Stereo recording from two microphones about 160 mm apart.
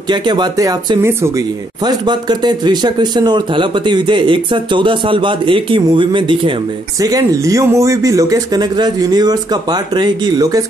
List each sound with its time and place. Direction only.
0.1 s speech: 25° right (ahead or behind)